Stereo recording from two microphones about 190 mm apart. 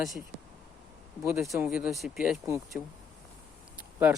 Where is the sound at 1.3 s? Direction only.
Centre (ahead or behind).